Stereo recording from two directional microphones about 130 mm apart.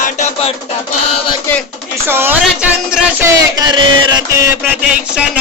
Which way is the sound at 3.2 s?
30° right (ahead or behind).